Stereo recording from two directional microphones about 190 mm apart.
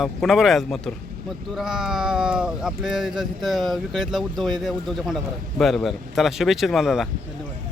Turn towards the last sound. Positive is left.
turn(degrees=0)  # may be behind; listen again after turning